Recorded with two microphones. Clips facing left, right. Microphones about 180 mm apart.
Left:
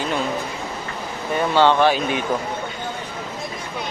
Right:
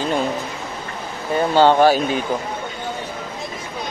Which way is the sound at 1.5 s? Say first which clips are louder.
Right 3 dB; 40° right (ahead or behind).